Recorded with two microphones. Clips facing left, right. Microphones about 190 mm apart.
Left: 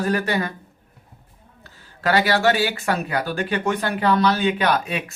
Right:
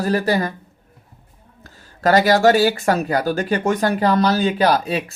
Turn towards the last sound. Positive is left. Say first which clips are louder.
# right 4 dB
turn(degrees=-35)  # may be behind; listen again after turning